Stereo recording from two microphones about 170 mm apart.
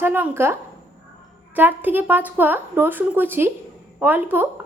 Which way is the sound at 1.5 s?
10° right (ahead or behind).